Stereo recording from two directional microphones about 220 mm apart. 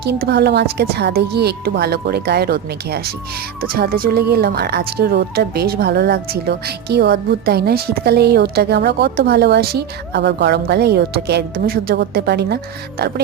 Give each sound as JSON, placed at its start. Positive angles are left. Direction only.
{"t": 0.0, "sound": "speech", "side_deg": -50}